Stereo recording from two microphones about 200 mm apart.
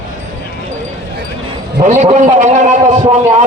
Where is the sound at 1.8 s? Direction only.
35° right (ahead or behind).